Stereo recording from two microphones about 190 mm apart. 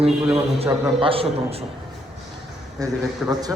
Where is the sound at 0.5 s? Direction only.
30° right (ahead or behind).